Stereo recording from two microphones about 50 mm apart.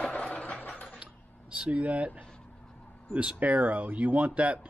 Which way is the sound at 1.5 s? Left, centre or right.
Right.